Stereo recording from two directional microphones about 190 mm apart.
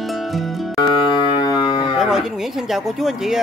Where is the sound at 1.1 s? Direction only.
25° left (ahead or behind).